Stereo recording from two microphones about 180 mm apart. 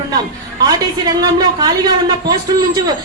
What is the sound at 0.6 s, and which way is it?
A woman's voice, 20° right (ahead or behind).